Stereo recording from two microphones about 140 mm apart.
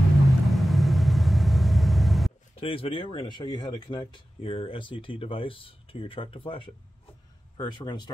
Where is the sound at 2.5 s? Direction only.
45° left (ahead or behind).